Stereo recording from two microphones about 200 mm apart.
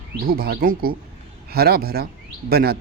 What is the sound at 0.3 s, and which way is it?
Speech, 50° right (ahead or behind).